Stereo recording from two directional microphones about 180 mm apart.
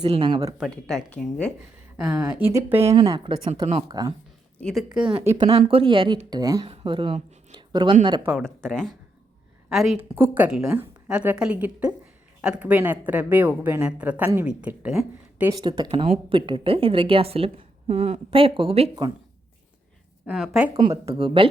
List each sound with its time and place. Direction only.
0.1 s speech: 25° right (ahead or behind)
0.6 s speech: centre (ahead or behind)
2.0 s speech: 15° right (ahead or behind)
2.8 s a woman's voice: 30° right (ahead or behind)
4.6 s speech: centre (ahead or behind)
5.4 s speech: 30° right (ahead or behind)
8.4 s speech: 5° left (ahead or behind)
15.4 s a woman's voice: 20° right (ahead or behind)
20.2 s speech: centre (ahead or behind)
21.1 s speech: 30° right (ahead or behind)